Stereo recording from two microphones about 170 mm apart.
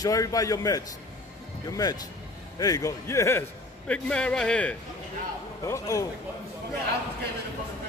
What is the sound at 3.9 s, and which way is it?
Speech, 5° left (ahead or behind).